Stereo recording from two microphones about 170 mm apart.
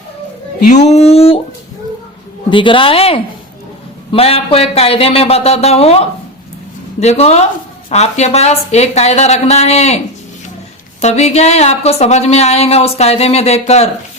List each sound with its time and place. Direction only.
0.6 s speech: 45° left (ahead or behind)
2.5 s speech: 30° left (ahead or behind)
11.0 s speech: 40° left (ahead or behind)